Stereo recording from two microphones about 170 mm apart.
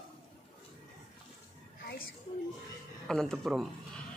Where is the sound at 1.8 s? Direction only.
60° left (ahead or behind).